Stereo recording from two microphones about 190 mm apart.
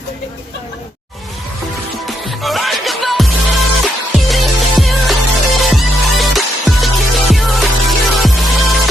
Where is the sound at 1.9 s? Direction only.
Centre (ahead or behind).